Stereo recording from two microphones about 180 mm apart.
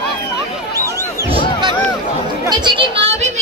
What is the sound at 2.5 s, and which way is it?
Music, 25° right (ahead or behind).